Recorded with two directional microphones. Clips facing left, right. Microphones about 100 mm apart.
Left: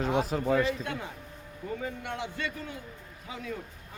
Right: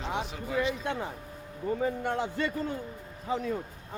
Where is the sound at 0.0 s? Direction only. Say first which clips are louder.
Left 6 dB; 45° left (ahead or behind).